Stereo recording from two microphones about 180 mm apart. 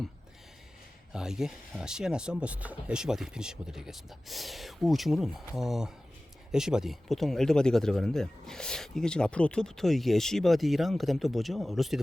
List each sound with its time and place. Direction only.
1.1 s speech: 5° right (ahead or behind)